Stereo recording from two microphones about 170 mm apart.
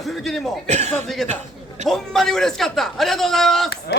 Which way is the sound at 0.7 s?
40° right (ahead or behind).